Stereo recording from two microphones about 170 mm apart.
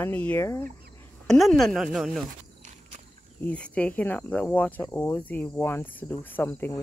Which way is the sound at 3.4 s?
5° left (ahead or behind).